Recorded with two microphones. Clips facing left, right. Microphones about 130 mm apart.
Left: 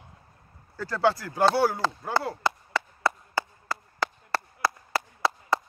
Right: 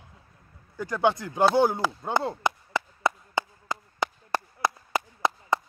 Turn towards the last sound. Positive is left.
turn(degrees=-20)  # may be behind; listen again after turning